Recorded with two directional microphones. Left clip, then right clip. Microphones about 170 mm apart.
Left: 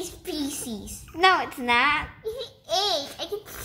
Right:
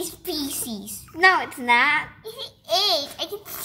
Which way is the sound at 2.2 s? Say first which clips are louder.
Left 2 dB; 60° right (ahead or behind).